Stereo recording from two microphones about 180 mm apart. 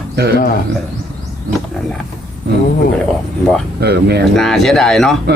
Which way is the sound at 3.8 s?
65° right (ahead or behind).